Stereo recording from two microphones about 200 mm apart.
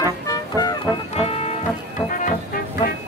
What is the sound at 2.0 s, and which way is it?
Music, 40° left (ahead or behind).